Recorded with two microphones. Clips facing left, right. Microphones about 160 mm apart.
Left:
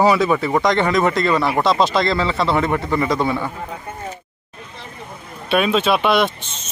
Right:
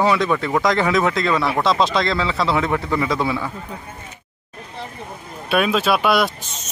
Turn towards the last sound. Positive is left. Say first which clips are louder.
# left 1 dB
turn(degrees=0)  # may be behind; listen again after turning